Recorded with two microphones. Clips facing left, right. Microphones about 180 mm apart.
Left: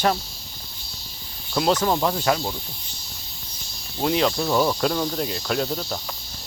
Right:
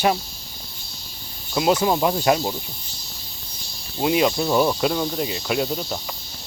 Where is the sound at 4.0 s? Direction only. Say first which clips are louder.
Right 2 dB; 10° right (ahead or behind).